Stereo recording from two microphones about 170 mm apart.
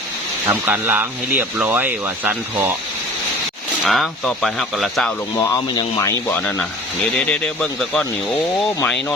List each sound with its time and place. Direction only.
0.4 s speech: 10° right (ahead or behind)
3.8 s speech: centre (ahead or behind)
5.4 s speech: 20° left (ahead or behind)